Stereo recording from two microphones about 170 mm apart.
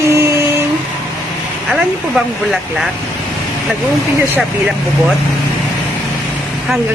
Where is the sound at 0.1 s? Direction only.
15° right (ahead or behind).